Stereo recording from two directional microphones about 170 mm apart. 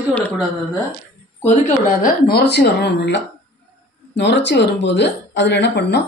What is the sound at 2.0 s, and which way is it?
Speech, 65° left (ahead or behind).